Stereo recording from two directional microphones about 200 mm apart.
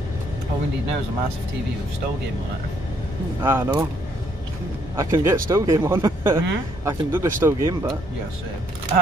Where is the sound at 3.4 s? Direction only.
10° right (ahead or behind).